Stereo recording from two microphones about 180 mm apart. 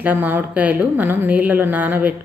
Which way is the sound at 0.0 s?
10° right (ahead or behind).